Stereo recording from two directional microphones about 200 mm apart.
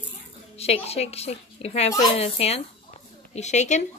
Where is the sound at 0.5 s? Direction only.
30° left (ahead or behind).